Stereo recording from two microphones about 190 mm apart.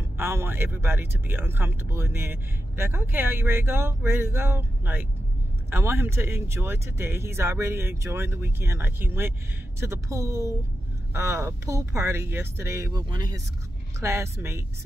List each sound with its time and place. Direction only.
0.2 s speech: 10° right (ahead or behind)